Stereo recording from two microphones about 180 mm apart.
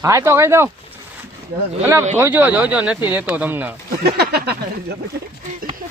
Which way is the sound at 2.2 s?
10° right (ahead or behind).